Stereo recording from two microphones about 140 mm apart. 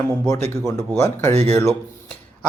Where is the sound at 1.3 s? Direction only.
50° right (ahead or behind).